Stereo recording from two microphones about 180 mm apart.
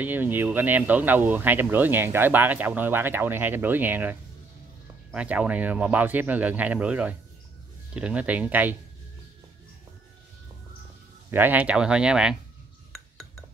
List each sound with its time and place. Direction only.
0.0 s speech: 10° right (ahead or behind)
11.2 s speech: 10° right (ahead or behind)